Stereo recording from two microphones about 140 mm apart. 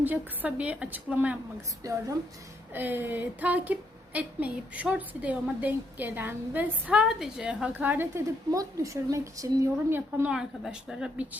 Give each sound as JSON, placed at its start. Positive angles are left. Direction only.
{"t": 0.0, "sound": "a woman's voice", "side_deg": -10}
{"t": 1.8, "sound": "a woman's voice", "side_deg": -20}